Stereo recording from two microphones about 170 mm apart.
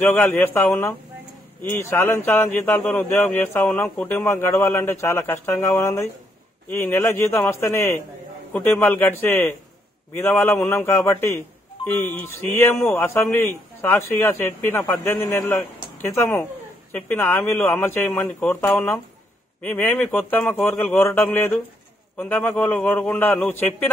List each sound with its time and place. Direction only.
0.0 s speech: 10° left (ahead or behind)